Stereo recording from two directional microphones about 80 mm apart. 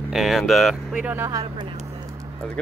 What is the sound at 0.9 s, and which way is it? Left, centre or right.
Speech, centre.